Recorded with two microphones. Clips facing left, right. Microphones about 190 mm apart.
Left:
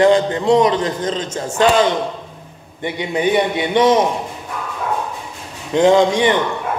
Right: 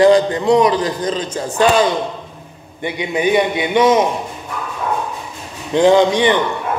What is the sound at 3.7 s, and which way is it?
Speech, 30° left (ahead or behind).